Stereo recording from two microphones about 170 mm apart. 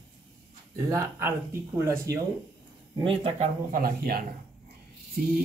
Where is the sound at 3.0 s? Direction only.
35° right (ahead or behind).